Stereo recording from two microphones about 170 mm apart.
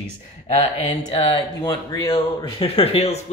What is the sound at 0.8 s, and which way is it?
Speech, 30° left (ahead or behind).